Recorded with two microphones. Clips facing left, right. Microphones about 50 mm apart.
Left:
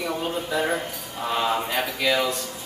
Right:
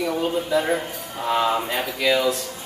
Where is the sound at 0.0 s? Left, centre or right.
Centre.